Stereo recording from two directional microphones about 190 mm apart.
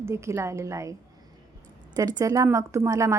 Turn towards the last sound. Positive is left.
turn(degrees=-15)  # may be behind; listen again after turning